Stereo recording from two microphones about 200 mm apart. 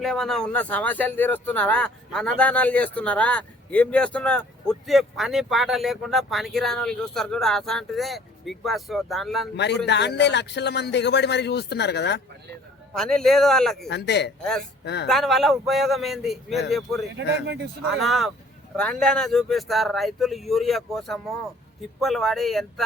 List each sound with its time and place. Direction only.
0.0 s speech: centre (ahead or behind)
9.8 s speech: 60° left (ahead or behind)
12.9 s speech: 5° left (ahead or behind)
13.8 s speech: 55° left (ahead or behind)
15.0 s speech: centre (ahead or behind)
17.2 s speech: 60° right (ahead or behind)
18.0 s speech: centre (ahead or behind)